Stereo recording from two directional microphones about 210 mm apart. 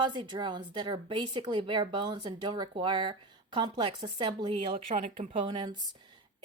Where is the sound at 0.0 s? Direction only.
20° right (ahead or behind).